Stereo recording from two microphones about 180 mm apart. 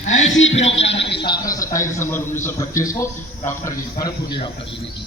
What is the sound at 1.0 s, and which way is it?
Speech, 70° left (ahead or behind).